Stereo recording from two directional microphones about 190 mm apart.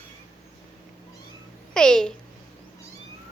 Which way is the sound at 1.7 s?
5° left (ahead or behind).